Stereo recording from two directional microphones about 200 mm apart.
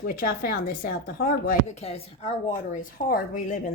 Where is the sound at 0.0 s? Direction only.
50° left (ahead or behind).